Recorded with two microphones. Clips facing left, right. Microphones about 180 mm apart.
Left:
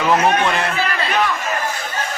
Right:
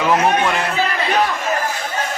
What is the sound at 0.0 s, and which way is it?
Speech, 5° right (ahead or behind).